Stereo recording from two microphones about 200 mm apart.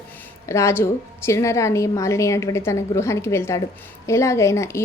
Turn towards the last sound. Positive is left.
turn(degrees=15)  # may be behind; listen again after turning